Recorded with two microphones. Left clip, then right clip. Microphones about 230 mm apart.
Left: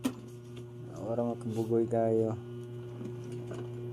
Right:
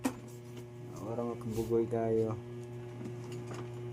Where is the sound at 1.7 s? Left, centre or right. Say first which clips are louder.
Left 3 dB; centre.